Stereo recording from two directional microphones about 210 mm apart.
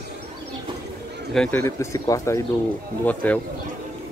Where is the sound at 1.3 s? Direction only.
10° left (ahead or behind).